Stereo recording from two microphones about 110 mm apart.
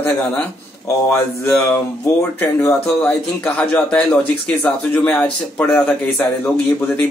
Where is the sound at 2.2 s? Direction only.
25° left (ahead or behind).